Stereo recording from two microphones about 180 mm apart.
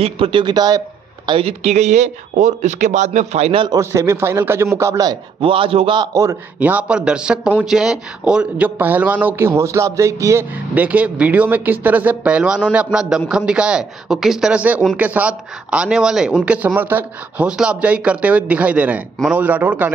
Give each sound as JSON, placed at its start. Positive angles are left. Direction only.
{"t": 0.0, "sound": "speech", "side_deg": -30}
{"t": 3.6, "sound": "a man's voice", "side_deg": -15}